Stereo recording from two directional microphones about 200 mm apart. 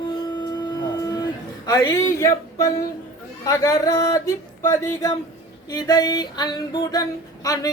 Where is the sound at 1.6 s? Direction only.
15° left (ahead or behind).